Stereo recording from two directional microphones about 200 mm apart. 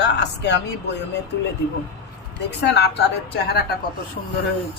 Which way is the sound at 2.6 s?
55° left (ahead or behind).